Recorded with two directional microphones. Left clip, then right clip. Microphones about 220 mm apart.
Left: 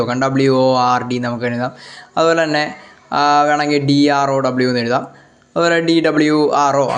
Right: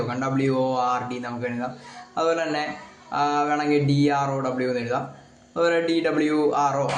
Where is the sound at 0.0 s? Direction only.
45° left (ahead or behind).